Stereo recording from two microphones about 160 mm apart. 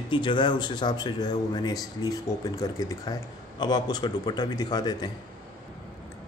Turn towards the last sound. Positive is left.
turn(degrees=25)  # may be behind; listen again after turning